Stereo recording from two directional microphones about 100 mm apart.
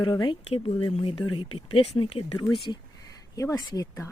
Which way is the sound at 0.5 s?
65° left (ahead or behind).